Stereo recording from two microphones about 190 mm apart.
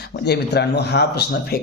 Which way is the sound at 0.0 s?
60° left (ahead or behind).